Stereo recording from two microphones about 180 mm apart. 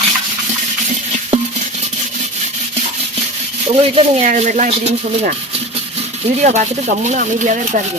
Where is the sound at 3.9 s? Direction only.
35° right (ahead or behind).